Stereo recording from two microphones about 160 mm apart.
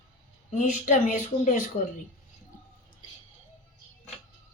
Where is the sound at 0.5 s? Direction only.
50° left (ahead or behind).